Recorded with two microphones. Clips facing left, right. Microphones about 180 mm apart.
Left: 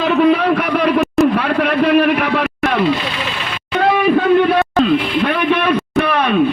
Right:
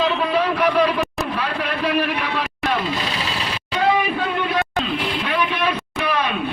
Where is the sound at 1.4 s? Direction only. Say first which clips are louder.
Left 8 dB; 55° left (ahead or behind).